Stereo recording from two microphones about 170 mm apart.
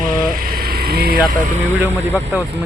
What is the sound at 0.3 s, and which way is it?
Vehicle, 60° right (ahead or behind).